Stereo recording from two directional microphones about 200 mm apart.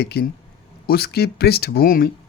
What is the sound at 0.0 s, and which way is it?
A man's voice, 55° left (ahead or behind).